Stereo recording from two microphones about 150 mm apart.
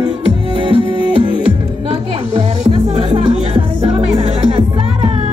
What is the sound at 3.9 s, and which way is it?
Music, 40° right (ahead or behind).